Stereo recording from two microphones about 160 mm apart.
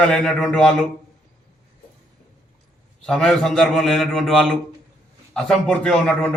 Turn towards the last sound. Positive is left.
turn(degrees=5)  # may be behind; listen again after turning